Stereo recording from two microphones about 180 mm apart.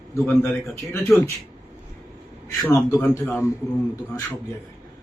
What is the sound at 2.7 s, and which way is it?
Speech, 15° left (ahead or behind).